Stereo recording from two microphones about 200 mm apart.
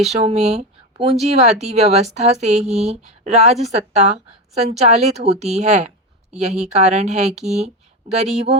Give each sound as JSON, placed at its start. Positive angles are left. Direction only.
{"t": 0.0, "sound": "speech", "side_deg": -30}